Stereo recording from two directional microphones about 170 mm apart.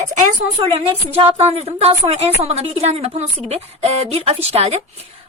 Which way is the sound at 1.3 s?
35° right (ahead or behind).